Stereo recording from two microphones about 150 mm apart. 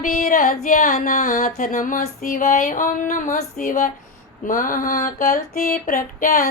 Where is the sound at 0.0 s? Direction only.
60° left (ahead or behind).